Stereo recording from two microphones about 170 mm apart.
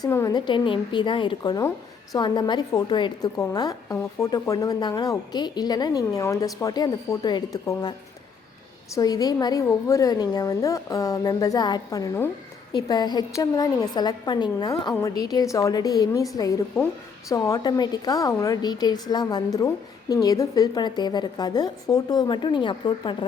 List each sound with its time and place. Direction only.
0.0 s a woman's voice: 20° left (ahead or behind)
9.0 s a woman's voice: 20° left (ahead or behind)